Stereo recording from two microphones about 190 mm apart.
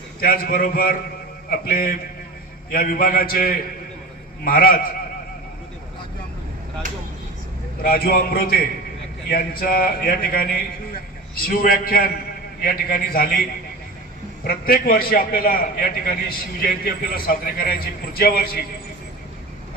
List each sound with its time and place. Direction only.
0.2 s a man's voice: 50° left (ahead or behind)
7.8 s a man's voice: 50° left (ahead or behind)
14.4 s a man's voice: 50° left (ahead or behind)